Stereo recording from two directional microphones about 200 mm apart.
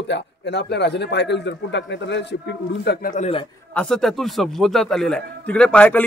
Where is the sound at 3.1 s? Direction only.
30° left (ahead or behind).